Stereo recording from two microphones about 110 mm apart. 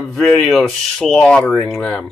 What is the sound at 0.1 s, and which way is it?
Speech, centre (ahead or behind).